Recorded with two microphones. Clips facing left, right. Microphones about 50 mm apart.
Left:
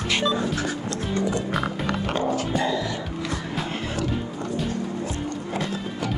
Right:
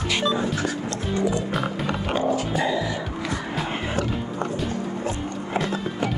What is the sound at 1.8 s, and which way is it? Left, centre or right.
Music, centre.